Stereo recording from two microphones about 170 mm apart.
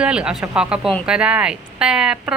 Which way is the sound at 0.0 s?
5° right (ahead or behind).